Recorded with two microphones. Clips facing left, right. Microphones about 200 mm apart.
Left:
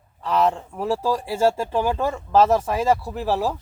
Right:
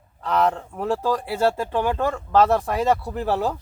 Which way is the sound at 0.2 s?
5° left (ahead or behind).